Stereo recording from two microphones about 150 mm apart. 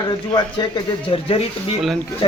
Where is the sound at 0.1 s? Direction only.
30° left (ahead or behind).